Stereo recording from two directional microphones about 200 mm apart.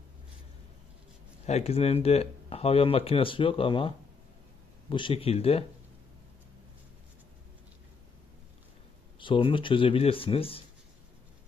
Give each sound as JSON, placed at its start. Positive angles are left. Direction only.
{"t": 1.4, "sound": "speech", "side_deg": 35}
{"t": 9.2, "sound": "speech", "side_deg": 25}